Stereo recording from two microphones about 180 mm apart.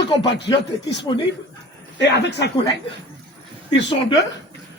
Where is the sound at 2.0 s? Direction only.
70° left (ahead or behind).